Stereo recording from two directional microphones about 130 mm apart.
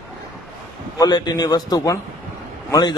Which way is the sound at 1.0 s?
30° left (ahead or behind).